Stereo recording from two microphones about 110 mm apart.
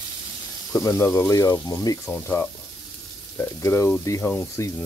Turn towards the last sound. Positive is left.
turn(degrees=25)  # may be behind; listen again after turning